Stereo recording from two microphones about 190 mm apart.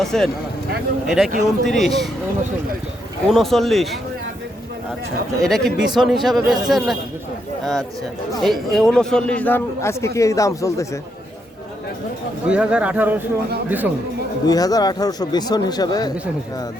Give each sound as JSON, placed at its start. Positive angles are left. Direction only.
{"t": 0.0, "sound": "speech", "side_deg": 0}
{"t": 3.2, "sound": "speech", "side_deg": 0}
{"t": 5.4, "sound": "a man's voice", "side_deg": 0}
{"t": 12.5, "sound": "speech", "side_deg": -5}
{"t": 14.4, "sound": "speech", "side_deg": 20}